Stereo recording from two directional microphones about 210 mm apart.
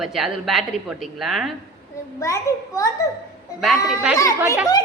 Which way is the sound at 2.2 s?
15° left (ahead or behind).